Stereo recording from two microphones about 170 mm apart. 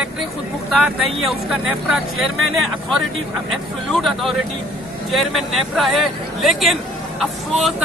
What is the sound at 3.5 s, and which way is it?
Speech, centre (ahead or behind).